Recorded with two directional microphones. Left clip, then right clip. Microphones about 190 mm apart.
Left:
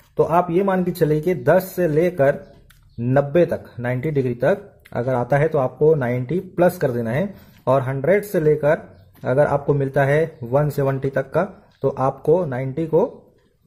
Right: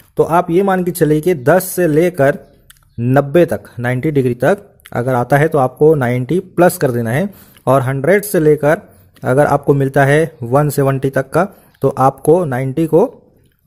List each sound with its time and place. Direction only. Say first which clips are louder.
0.1 s speech: right 5 dB; 45° right (ahead or behind)